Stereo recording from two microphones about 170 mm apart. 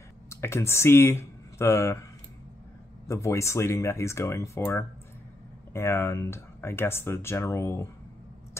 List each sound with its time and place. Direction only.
0.3 s speech: 15° left (ahead or behind)
3.1 s speech: 15° left (ahead or behind)